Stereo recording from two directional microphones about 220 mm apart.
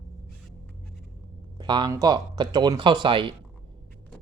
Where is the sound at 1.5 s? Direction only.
20° right (ahead or behind).